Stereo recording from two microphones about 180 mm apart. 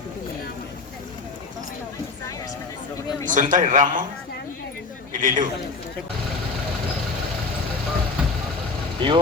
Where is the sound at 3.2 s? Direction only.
45° right (ahead or behind).